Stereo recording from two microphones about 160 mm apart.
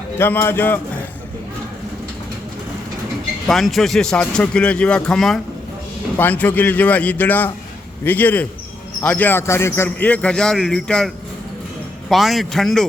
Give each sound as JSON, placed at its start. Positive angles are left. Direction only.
{"t": 0.2, "sound": "a man's voice", "side_deg": 15}
{"t": 3.4, "sound": "a man's voice", "side_deg": 0}